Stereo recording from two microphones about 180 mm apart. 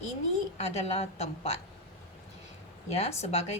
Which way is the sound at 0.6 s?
35° left (ahead or behind).